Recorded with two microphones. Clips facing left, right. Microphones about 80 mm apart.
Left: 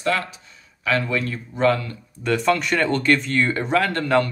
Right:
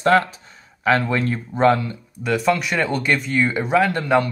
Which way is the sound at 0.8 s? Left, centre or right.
Right.